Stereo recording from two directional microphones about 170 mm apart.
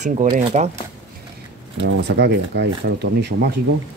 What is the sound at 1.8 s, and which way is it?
Speech, 85° right.